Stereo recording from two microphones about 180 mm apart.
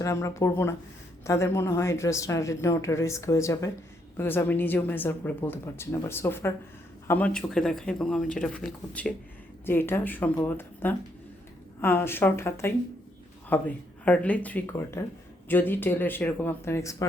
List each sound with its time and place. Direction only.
0.0 s speech: 15° left (ahead or behind)